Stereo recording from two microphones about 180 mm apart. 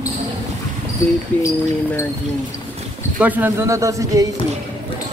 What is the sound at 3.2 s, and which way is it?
Speech, 10° right (ahead or behind).